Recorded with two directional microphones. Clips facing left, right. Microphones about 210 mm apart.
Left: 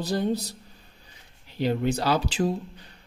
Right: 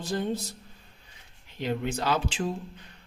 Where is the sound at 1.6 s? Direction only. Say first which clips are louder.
Left 5 dB; 35° left (ahead or behind).